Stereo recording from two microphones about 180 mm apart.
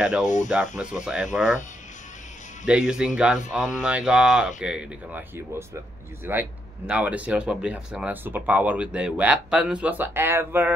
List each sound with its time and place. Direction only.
0.2 s speech: 45° left (ahead or behind)
0.5 s speech: 5° right (ahead or behind)
2.6 s speech: 5° right (ahead or behind)